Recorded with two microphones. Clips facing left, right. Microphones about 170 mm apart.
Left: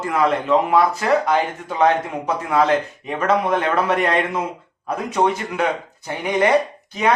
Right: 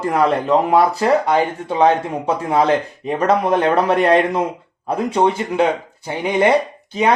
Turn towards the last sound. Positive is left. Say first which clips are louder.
# right 3 dB
turn(degrees=-30)  # may be behind; listen again after turning